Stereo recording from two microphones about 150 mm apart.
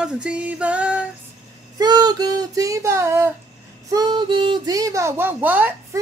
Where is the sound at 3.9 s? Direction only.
30° right (ahead or behind).